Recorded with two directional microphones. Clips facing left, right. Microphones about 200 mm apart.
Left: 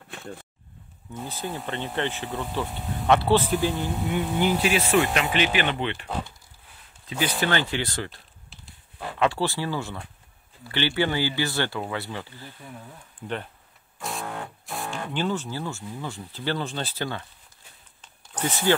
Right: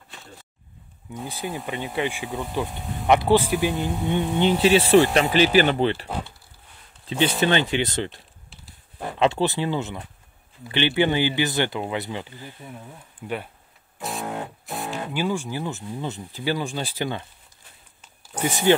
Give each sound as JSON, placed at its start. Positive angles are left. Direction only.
{"t": 0.1, "sound": "a sound", "side_deg": 55}
{"t": 1.1, "sound": "speech", "side_deg": -15}
{"t": 7.1, "sound": "speech", "side_deg": -25}
{"t": 9.2, "sound": "speech", "side_deg": -20}
{"t": 14.2, "sound": "music", "side_deg": -20}
{"t": 14.7, "sound": "music", "side_deg": 0}
{"t": 15.1, "sound": "speech", "side_deg": -10}
{"t": 18.0, "sound": "a sound", "side_deg": -10}